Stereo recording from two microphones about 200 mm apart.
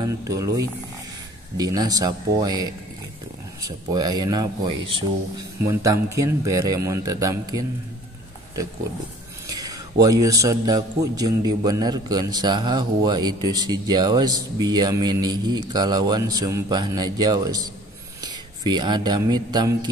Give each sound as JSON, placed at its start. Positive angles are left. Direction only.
{"t": 0.0, "sound": "a man's voice", "side_deg": -20}
{"t": 10.0, "sound": "a man's voice", "side_deg": -15}